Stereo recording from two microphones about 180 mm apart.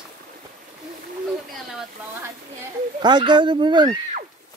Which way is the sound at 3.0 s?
25° right (ahead or behind).